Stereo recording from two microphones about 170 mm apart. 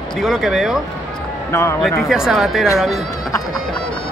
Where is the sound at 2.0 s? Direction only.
Centre (ahead or behind).